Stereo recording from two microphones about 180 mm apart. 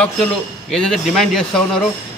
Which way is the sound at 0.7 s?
Centre (ahead or behind).